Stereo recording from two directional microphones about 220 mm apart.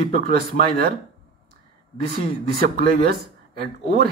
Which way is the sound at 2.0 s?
40° right (ahead or behind).